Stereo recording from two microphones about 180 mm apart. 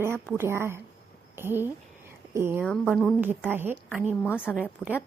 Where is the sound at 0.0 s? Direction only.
15° right (ahead or behind).